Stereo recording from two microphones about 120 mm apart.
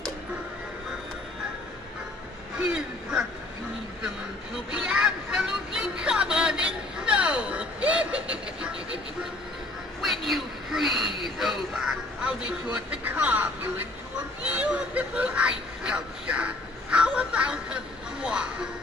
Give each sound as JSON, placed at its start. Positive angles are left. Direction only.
{"t": 2.6, "sound": "quack", "side_deg": -5}
{"t": 4.6, "sound": "music", "side_deg": -5}
{"t": 10.0, "sound": "a sound", "side_deg": 0}